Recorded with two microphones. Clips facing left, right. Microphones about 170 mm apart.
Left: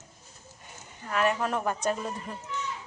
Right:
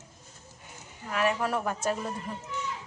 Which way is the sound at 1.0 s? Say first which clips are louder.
Left 1 dB; 10° right (ahead or behind).